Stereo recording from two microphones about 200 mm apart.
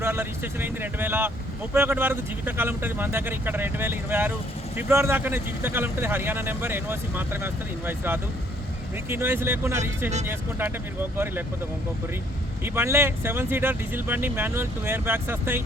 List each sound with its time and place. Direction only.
0.0 s speech: 10° right (ahead or behind)
12.6 s speech: 10° right (ahead or behind)